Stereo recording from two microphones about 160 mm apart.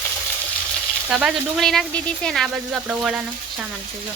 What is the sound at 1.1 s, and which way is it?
Speech, centre (ahead or behind).